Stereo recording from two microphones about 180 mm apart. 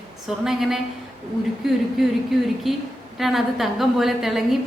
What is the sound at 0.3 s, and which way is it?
A woman's voice, centre (ahead or behind).